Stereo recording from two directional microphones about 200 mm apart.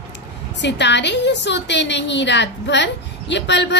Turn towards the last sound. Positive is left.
turn(degrees=60)  # may be behind; listen again after turning